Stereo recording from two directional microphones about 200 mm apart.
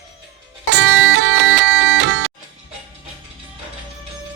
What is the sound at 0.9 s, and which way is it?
Music, 70° right (ahead or behind).